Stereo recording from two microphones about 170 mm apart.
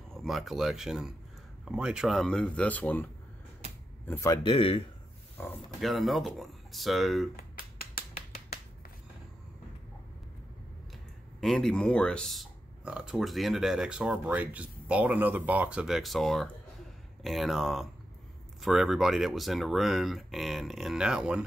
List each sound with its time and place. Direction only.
0.1 s speech: centre (ahead or behind)
4.4 s speech: 30° left (ahead or behind)
5.4 s speech: 15° left (ahead or behind)
5.8 s speech: centre (ahead or behind)
7.3 s a sound: 60° left (ahead or behind)
11.4 s speech: 5° left (ahead or behind)